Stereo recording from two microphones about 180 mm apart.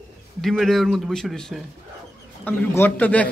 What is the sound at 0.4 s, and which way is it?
A man's voice, centre (ahead or behind).